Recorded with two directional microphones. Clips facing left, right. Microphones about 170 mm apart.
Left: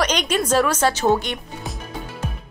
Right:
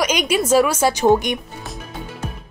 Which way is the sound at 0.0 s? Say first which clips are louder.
Right 2 dB; 10° right (ahead or behind).